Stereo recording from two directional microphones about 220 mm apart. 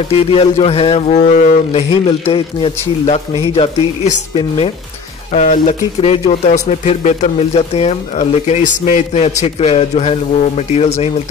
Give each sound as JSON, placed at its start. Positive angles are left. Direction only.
{"t": 0.1, "sound": "speech", "side_deg": 25}